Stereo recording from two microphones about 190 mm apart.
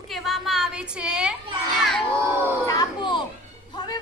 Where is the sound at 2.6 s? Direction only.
20° left (ahead or behind).